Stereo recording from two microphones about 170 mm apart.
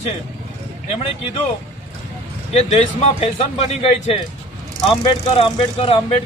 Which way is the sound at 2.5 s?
40° left (ahead or behind).